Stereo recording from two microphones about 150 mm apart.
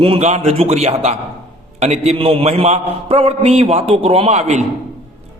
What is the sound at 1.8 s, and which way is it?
A man's voice, 45° right (ahead or behind).